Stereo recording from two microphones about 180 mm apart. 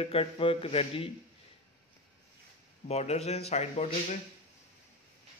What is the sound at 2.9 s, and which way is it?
Speech, 35° left (ahead or behind).